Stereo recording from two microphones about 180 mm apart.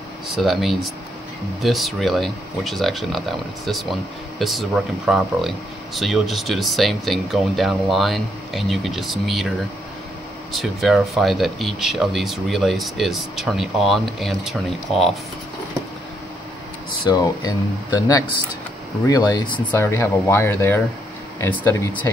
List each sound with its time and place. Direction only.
0.3 s speech: centre (ahead or behind)
10.5 s speech: centre (ahead or behind)
17.1 s speech: 20° left (ahead or behind)
19.0 s speech: 20° left (ahead or behind)
19.7 s speech: 15° left (ahead or behind)